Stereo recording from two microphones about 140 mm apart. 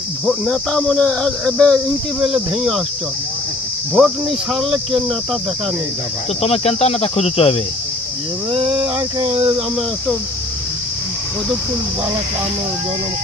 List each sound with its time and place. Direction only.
0.3 s speech: 5° left (ahead or behind)
3.9 s speech: centre (ahead or behind)
6.4 s speech: 45° left (ahead or behind)
8.5 s speech: 40° right (ahead or behind)